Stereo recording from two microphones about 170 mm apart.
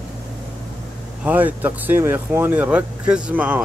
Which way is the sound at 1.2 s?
10° right (ahead or behind).